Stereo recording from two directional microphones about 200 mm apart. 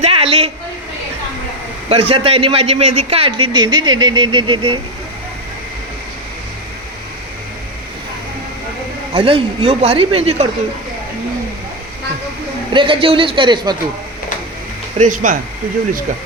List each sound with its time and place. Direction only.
0.0 s a sound: 30° right (ahead or behind)
1.9 s a man's voice: 30° right (ahead or behind)
9.1 s a man's voice: 25° right (ahead or behind)
12.7 s a man's voice: 25° right (ahead or behind)
14.9 s speech: 40° right (ahead or behind)